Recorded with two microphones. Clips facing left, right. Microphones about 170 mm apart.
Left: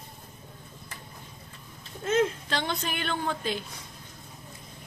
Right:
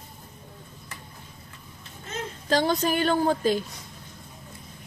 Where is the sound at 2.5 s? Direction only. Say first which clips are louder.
Right 8 dB; 35° right (ahead or behind).